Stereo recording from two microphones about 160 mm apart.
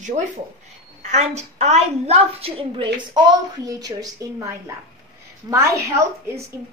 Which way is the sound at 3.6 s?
20° right (ahead or behind).